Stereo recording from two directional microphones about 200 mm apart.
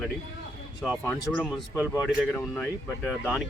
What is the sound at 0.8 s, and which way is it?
Speech, centre (ahead or behind).